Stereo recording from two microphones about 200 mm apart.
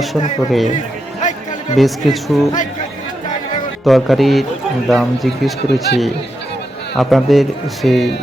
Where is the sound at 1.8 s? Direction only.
Centre (ahead or behind).